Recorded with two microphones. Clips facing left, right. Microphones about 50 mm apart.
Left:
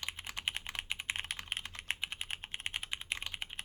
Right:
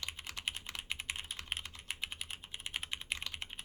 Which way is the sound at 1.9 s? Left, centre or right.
Left.